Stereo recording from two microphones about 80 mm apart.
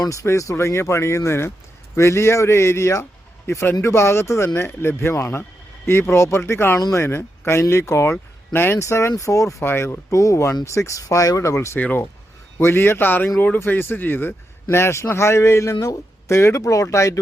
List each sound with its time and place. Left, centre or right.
0.0 s a man's voice: left
11.8 s a man's voice: left
15.7 s speech: left